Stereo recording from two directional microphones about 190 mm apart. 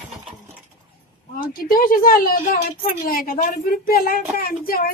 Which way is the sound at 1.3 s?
50° left (ahead or behind).